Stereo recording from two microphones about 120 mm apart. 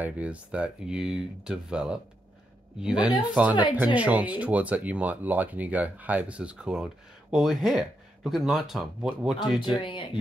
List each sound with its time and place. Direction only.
0.0 s speech: 10° right (ahead or behind)
9.8 s speech: 45° left (ahead or behind)